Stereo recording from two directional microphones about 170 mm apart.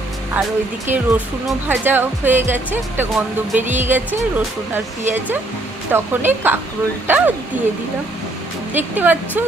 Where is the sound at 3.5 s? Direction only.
45° right (ahead or behind).